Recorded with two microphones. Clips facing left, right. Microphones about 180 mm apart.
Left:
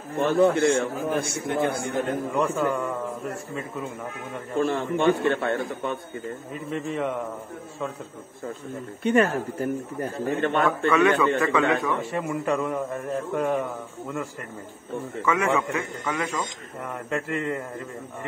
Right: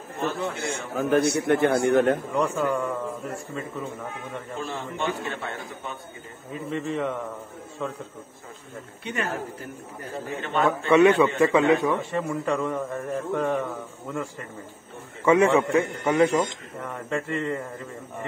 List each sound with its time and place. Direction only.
0.3 s a man's voice: 60° left (ahead or behind)
1.5 s a man's voice: 65° right (ahead or behind)
2.3 s a man's voice: centre (ahead or behind)
4.6 s a man's voice: 60° left (ahead or behind)
6.7 s a man's voice: 5° left (ahead or behind)
9.0 s speech: 50° left (ahead or behind)
10.2 s a man's voice: 60° left (ahead or behind)
11.0 s a man's voice: 25° right (ahead or behind)
12.1 s a man's voice: 10° left (ahead or behind)
15.2 s a man's voice: 30° right (ahead or behind)
16.8 s a man's voice: centre (ahead or behind)